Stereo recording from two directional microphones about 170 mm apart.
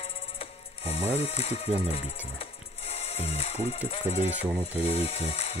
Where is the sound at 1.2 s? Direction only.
40° left (ahead or behind).